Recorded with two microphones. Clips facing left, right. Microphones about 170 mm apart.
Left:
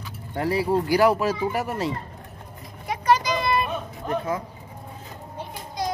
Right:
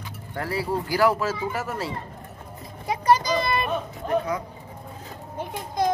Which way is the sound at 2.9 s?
35° right (ahead or behind).